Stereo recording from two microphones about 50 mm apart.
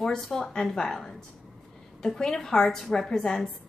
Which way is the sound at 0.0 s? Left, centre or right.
Centre.